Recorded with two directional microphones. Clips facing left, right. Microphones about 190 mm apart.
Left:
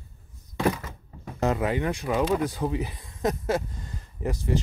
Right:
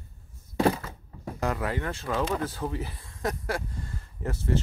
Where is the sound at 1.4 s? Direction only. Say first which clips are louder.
Left 5 dB; 20° left (ahead or behind).